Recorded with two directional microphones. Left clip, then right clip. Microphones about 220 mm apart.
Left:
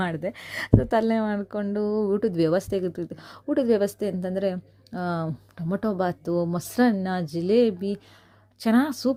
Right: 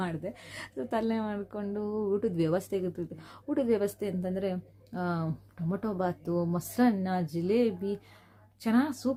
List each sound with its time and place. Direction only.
0.0 s speech: 40° left (ahead or behind)